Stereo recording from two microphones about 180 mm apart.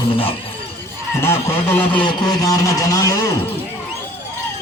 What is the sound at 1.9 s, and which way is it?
Speech, 25° left (ahead or behind).